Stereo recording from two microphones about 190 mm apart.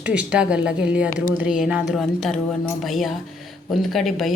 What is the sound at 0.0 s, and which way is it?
Speech, 5° right (ahead or behind).